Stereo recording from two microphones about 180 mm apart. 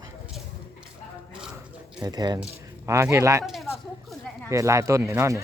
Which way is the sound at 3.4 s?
Centre (ahead or behind).